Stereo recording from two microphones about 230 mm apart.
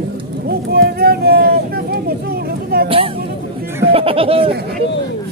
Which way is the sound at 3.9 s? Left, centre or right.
Right.